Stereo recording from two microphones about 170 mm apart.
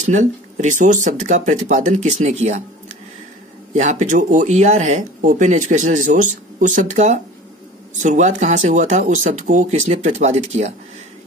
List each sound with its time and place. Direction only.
0.0 s speech: 45° right (ahead or behind)
3.7 s speech: 45° right (ahead or behind)